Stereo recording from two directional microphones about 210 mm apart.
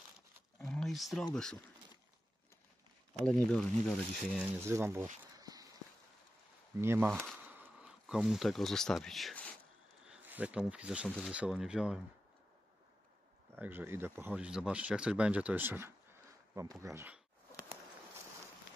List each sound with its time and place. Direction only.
0.6 s a sound: centre (ahead or behind)
1.3 s speech: 5° left (ahead or behind)
3.2 s speech: 5° left (ahead or behind)
4.6 s speech: 10° right (ahead or behind)
5.3 s walk: 15° right (ahead or behind)
6.8 s speech: 10° right (ahead or behind)
7.1 s speech: centre (ahead or behind)
10.0 s speech: 5° right (ahead or behind)
13.6 s speech: 10° right (ahead or behind)